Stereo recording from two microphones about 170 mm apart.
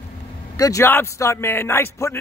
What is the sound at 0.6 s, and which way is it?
A man's voice, 20° left (ahead or behind).